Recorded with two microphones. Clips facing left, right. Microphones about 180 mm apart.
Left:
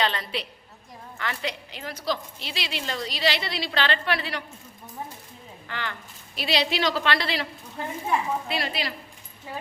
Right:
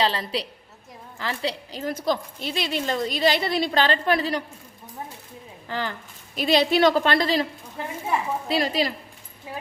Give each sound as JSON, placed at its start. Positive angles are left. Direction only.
{"t": 0.0, "sound": "a woman's voice", "side_deg": -30}
{"t": 5.6, "sound": "speech", "side_deg": -35}
{"t": 6.3, "sound": "speech", "side_deg": -45}
{"t": 8.4, "sound": "a woman's voice", "side_deg": -40}